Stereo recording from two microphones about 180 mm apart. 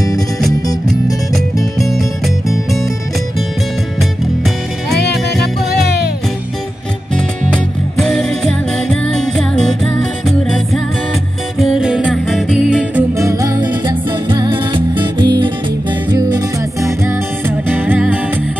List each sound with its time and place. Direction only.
1.3 s music: centre (ahead or behind)
7.5 s music: centre (ahead or behind)
13.2 s music: 20° right (ahead or behind)